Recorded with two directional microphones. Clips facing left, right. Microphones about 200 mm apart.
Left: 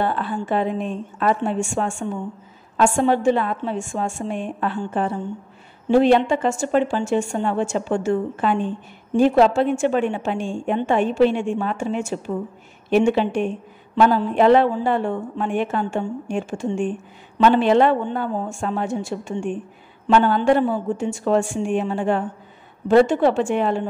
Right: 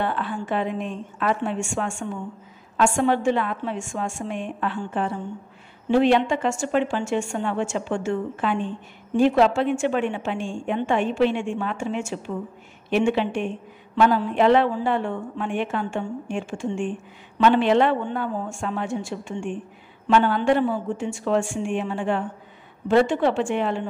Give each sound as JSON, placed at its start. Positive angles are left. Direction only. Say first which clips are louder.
{"t": 0.0, "sound": "speech", "louder": "left 3 dB", "side_deg": 35}